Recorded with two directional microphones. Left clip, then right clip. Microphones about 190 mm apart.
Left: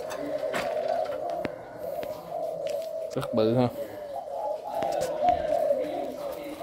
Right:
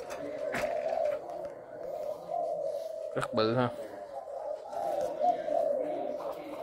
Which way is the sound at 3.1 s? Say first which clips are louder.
Left 4 dB; 10° left (ahead or behind).